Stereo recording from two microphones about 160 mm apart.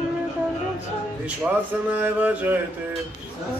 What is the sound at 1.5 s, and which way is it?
Male singing, 5° right (ahead or behind).